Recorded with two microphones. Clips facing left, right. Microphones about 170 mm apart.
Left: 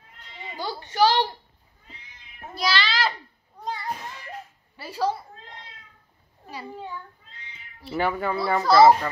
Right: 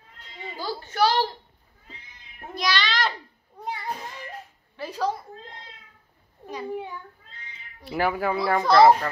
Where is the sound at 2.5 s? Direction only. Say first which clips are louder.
Left 1 dB; 5° left (ahead or behind).